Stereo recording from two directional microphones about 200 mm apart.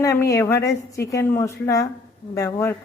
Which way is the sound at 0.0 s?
15° left (ahead or behind).